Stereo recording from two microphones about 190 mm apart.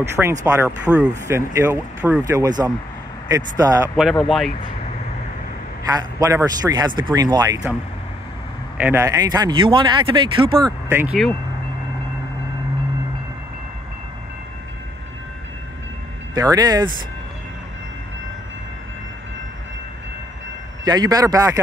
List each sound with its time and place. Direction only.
0.1 s speech: 15° right (ahead or behind)
3.9 s speech: centre (ahead or behind)
5.9 s speech: 20° right (ahead or behind)
8.7 s speech: 10° right (ahead or behind); by 10.6 s 25° right (ahead or behind)
10.9 s speech: 10° right (ahead or behind)
16.3 s speech: 20° right (ahead or behind)
20.8 s speech: 20° right (ahead or behind)